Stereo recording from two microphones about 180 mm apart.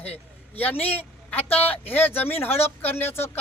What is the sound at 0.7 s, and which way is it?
Speech, 35° left (ahead or behind).